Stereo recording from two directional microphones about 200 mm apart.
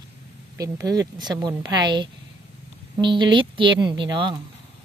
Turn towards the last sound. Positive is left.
turn(degrees=-25)  # may be behind; listen again after turning